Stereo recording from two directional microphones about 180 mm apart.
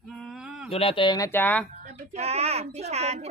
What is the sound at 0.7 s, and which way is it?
Speech, 30° left (ahead or behind).